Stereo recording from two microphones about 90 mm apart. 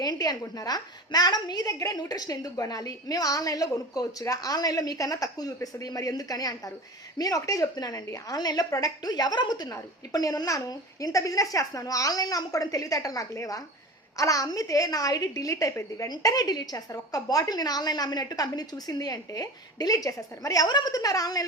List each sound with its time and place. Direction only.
0.0 s a woman's voice: 50° left (ahead or behind)